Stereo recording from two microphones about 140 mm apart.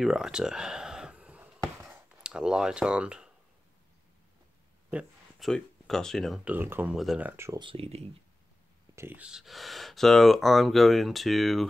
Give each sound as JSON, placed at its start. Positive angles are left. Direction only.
{"t": 0.0, "sound": "a sound", "side_deg": -5}
{"t": 4.9, "sound": "speech", "side_deg": 0}
{"t": 6.4, "sound": "speech", "side_deg": -15}
{"t": 7.5, "sound": "speech", "side_deg": -40}
{"t": 8.9, "sound": "speech", "side_deg": -15}